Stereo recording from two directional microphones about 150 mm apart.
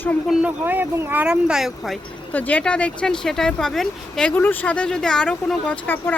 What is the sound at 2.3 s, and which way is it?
Speech, 10° left (ahead or behind).